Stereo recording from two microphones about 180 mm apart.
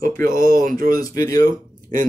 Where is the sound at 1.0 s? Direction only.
20° left (ahead or behind).